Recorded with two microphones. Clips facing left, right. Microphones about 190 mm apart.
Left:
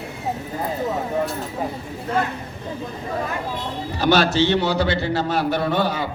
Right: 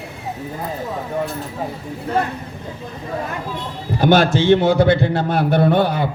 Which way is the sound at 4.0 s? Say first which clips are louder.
Right 3 dB; 50° right (ahead or behind).